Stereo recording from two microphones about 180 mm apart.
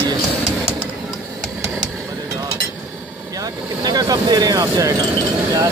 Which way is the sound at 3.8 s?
20° right (ahead or behind).